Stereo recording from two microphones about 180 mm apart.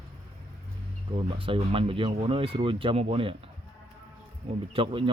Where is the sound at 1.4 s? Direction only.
30° right (ahead or behind).